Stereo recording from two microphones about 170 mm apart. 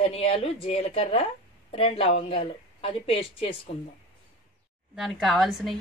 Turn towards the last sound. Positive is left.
turn(degrees=0)  # may be behind; listen again after turning